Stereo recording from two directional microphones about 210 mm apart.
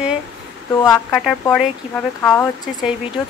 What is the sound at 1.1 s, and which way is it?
Speech, centre (ahead or behind).